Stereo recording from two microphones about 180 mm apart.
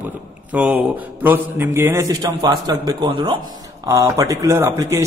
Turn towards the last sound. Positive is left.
turn(degrees=-15)  # may be behind; listen again after turning